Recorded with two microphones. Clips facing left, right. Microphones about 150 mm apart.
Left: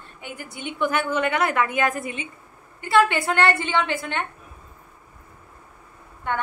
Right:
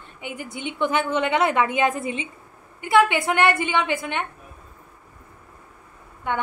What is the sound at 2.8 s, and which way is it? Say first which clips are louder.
A woman's voice: right 1 dB; 15° right (ahead or behind).